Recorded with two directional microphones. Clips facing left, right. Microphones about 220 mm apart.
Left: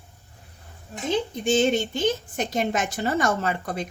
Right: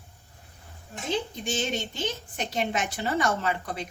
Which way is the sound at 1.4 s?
50° left (ahead or behind).